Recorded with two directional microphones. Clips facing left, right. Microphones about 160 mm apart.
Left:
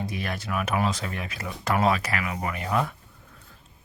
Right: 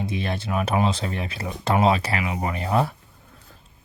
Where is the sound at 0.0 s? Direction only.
25° right (ahead or behind).